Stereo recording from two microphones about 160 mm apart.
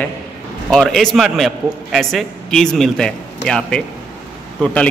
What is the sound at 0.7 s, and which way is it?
A man's voice, 5° left (ahead or behind).